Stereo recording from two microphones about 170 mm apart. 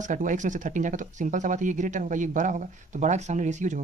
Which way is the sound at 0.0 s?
50° right (ahead or behind).